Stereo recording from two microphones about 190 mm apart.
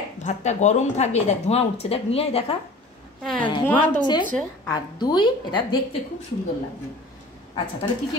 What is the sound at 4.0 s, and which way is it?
A woman's voice, 25° left (ahead or behind).